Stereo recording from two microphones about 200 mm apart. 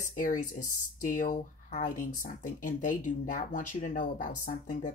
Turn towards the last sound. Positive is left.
turn(degrees=40)  # may be behind; listen again after turning